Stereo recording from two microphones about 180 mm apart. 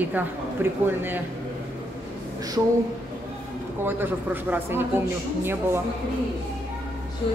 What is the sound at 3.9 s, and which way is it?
A woman's voice, 10° right (ahead or behind).